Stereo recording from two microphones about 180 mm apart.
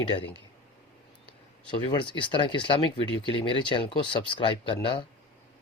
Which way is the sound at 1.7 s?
25° left (ahead or behind).